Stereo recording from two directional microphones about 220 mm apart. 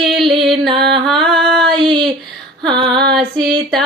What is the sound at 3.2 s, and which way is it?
Female singing, 5° left (ahead or behind).